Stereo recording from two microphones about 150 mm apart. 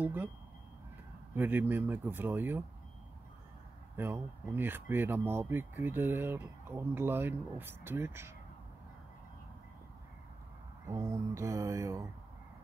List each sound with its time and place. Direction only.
0.0 s speech: 10° right (ahead or behind)
1.3 s speech: 15° right (ahead or behind)
3.9 s speech: 15° right (ahead or behind)
10.9 s mantra: 20° right (ahead or behind)